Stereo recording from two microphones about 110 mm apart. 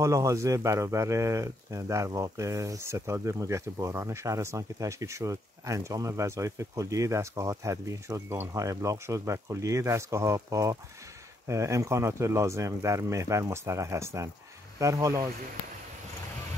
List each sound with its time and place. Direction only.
0.0 s speech: 25° right (ahead or behind)